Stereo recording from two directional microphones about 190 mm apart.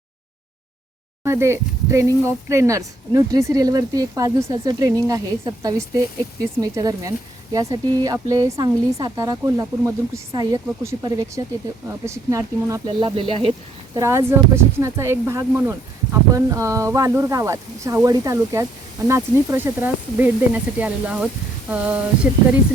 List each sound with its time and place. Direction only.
1.2 s speech: 15° right (ahead or behind)
13.9 s speech: 15° right (ahead or behind)